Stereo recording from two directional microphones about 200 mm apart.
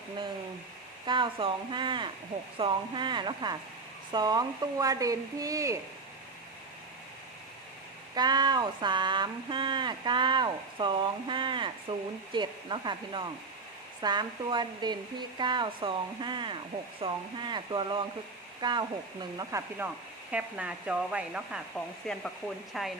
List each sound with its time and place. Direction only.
1.0 s speech: 25° right (ahead or behind)
8.1 s speech: 20° right (ahead or behind); by 22.9 s centre (ahead or behind)